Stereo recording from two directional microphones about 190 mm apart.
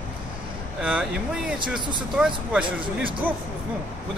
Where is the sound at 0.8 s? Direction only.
5° right (ahead or behind).